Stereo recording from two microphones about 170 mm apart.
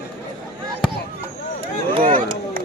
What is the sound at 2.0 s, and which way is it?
Run, 55° right (ahead or behind).